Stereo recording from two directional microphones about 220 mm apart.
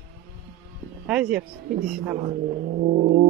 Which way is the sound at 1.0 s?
5° right (ahead or behind).